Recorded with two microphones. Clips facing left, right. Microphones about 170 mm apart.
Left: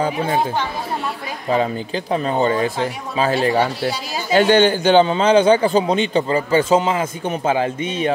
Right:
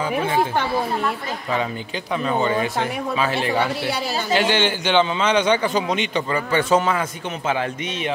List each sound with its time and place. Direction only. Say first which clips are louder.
2.1 s a man's voice: left 2 dB; 35° left (ahead or behind)